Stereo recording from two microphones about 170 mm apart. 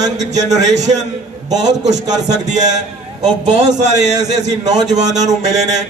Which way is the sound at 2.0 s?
45° right (ahead or behind).